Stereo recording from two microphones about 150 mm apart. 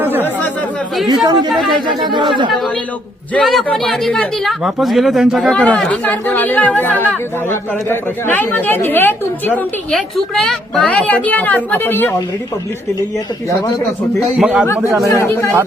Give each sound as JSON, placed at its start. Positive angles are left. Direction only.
{"t": 0.0, "sound": "chatter", "side_deg": -15}
{"t": 1.0, "sound": "speech", "side_deg": -30}
{"t": 1.5, "sound": "a man's voice", "side_deg": 0}
{"t": 1.9, "sound": "speech", "side_deg": -30}
{"t": 2.5, "sound": "a man's voice", "side_deg": 5}
{"t": 10.2, "sound": "speech", "side_deg": 0}
{"t": 14.2, "sound": "a man's voice", "side_deg": -5}
{"t": 15.1, "sound": "speech", "side_deg": 20}